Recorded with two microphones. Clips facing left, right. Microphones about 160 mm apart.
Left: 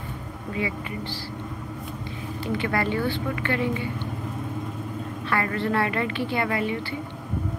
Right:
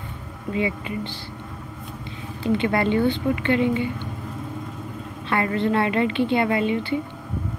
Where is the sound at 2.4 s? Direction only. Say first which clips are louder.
Right 5 dB; 25° right (ahead or behind).